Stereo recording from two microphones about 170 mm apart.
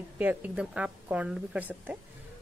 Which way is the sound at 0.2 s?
10° right (ahead or behind).